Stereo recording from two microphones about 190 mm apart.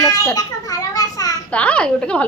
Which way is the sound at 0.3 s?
20° left (ahead or behind).